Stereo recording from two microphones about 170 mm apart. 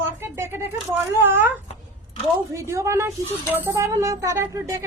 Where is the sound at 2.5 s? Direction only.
15° right (ahead or behind).